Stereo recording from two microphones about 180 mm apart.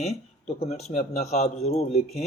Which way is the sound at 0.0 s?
40° left (ahead or behind).